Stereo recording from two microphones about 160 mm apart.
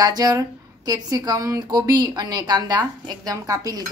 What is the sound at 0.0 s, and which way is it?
A woman's voice, 25° right (ahead or behind).